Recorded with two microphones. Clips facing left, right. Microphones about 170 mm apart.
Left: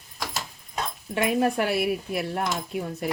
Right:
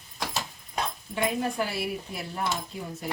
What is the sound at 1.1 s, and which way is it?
Speech, 65° left (ahead or behind).